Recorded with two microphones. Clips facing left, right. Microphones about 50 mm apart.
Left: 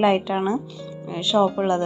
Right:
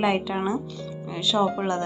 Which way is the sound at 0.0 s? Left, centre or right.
Left.